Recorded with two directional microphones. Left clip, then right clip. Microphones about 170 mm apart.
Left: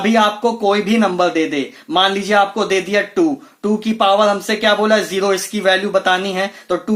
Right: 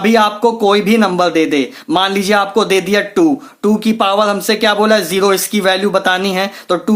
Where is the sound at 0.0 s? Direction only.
25° right (ahead or behind).